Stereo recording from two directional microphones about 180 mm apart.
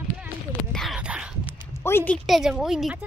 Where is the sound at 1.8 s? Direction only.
10° left (ahead or behind).